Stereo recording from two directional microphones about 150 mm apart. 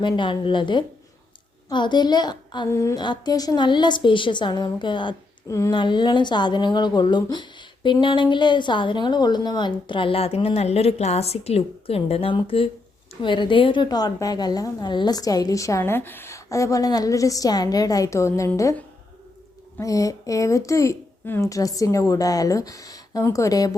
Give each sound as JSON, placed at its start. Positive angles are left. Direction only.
{"t": 0.0, "sound": "a woman's voice", "side_deg": 35}
{"t": 2.6, "sound": "speech", "side_deg": 20}
{"t": 5.5, "sound": "a woman's voice", "side_deg": 20}
{"t": 19.8, "sound": "a woman's voice", "side_deg": 20}